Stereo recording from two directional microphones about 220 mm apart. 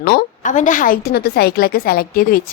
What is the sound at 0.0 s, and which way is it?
A woman's voice, 40° left (ahead or behind).